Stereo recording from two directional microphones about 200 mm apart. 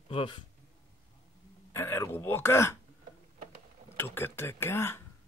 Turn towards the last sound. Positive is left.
turn(degrees=10)  # may be behind; listen again after turning